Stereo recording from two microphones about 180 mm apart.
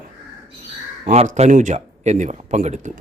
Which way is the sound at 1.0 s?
40° right (ahead or behind).